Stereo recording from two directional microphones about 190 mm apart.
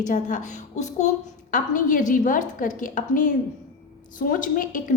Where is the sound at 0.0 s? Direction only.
40° left (ahead or behind).